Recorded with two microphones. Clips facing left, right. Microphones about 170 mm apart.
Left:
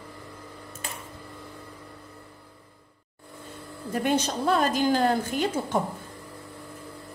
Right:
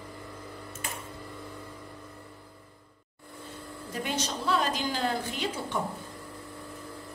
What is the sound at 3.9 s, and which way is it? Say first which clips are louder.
A woman's voice: left 8 dB; 55° left (ahead or behind).